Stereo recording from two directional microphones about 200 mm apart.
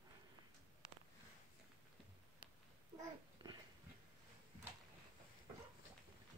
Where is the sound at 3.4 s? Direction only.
25° right (ahead or behind).